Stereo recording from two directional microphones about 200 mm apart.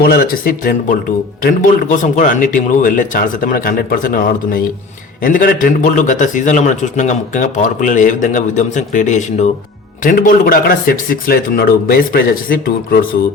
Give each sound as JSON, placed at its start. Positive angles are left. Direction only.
{"t": 0.0, "sound": "a man's voice", "side_deg": 50}